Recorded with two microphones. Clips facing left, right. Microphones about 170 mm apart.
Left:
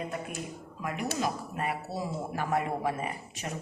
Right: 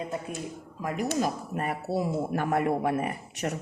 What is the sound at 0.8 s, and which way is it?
Speech, 40° right (ahead or behind).